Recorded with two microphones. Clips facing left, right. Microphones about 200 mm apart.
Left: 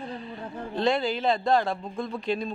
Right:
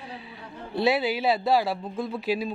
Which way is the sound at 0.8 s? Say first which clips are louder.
Right 1 dB; 5° right (ahead or behind).